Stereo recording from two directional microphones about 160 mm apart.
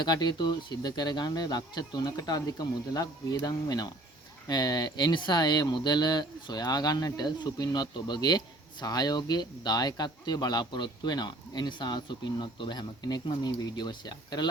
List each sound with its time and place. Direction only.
0.0 s speech: 25° left (ahead or behind)